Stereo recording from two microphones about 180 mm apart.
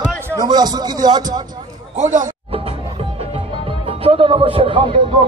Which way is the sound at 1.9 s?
45° right (ahead or behind).